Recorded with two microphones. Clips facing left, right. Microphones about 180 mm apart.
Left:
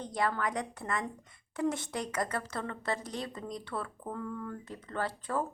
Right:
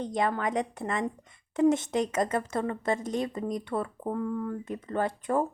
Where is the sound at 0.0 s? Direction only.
20° right (ahead or behind).